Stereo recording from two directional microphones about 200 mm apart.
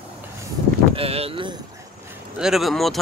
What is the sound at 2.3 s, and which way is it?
Speech, centre (ahead or behind).